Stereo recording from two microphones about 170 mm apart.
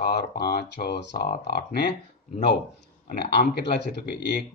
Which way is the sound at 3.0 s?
65° left (ahead or behind).